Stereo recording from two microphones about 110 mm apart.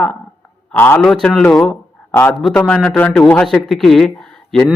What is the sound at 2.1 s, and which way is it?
A man's voice, 20° left (ahead or behind).